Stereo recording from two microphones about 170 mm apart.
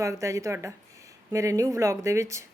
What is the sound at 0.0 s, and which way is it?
Speech, 20° right (ahead or behind).